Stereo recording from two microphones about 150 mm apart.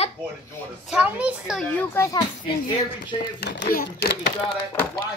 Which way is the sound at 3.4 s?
85° left.